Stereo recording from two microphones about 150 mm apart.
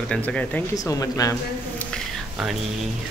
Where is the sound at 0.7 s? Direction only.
25° left (ahead or behind).